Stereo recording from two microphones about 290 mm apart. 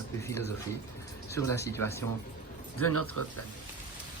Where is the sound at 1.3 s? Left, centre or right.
Centre.